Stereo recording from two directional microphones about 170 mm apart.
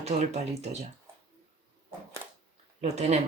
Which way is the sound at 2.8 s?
40° right (ahead or behind).